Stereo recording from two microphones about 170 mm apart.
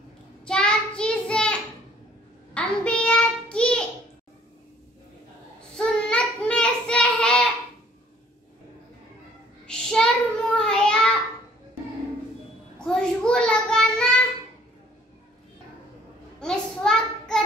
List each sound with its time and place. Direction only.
0.5 s child singing: 5° left (ahead or behind)
2.5 s a sound: 5° left (ahead or behind)
5.8 s child singing: 5° left (ahead or behind)
9.7 s child singing: 5° left (ahead or behind)
12.7 s child singing: 5° left (ahead or behind)
16.3 s child singing: 5° left (ahead or behind)